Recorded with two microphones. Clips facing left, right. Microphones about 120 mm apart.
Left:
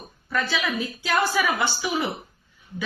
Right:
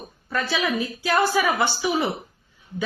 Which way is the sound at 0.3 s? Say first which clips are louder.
Right 2 dB; 25° right (ahead or behind).